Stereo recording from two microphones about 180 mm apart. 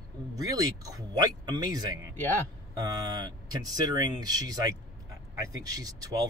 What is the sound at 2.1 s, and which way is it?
Speech, 10° left (ahead or behind).